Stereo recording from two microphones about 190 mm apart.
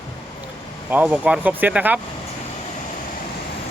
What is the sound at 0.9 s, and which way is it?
Speech, 5° right (ahead or behind).